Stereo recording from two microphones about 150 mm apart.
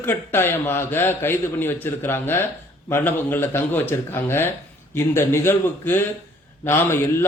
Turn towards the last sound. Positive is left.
turn(degrees=15)  # may be behind; listen again after turning